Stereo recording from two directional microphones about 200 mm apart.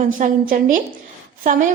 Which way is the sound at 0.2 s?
40° right (ahead or behind).